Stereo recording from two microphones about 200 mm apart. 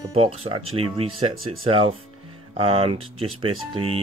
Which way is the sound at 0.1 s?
30° right (ahead or behind).